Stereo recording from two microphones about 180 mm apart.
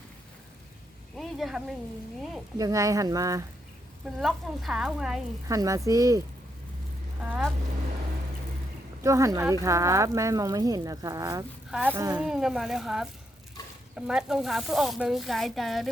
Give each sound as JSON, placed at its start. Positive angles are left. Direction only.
{"t": 1.1, "sound": "speech", "side_deg": 0}
{"t": 2.6, "sound": "speech", "side_deg": -20}
{"t": 4.0, "sound": "speech", "side_deg": 0}
{"t": 5.5, "sound": "speech", "side_deg": -20}
{"t": 7.2, "sound": "speech", "side_deg": -5}
{"t": 9.0, "sound": "speech", "side_deg": -15}
{"t": 11.7, "sound": "speech", "side_deg": -10}